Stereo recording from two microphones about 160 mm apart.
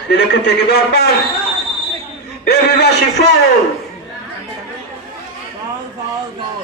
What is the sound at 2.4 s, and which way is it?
Speech, 90° left.